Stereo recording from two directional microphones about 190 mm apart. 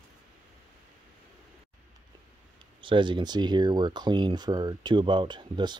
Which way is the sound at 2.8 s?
25° right (ahead or behind).